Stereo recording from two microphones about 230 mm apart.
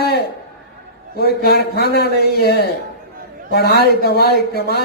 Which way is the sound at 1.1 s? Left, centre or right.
Left.